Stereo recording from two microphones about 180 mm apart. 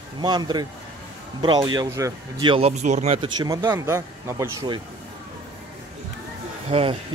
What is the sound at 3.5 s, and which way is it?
Speech, 15° right (ahead or behind).